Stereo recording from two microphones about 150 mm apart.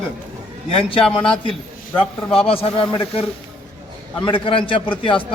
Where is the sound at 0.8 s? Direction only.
35° left (ahead or behind).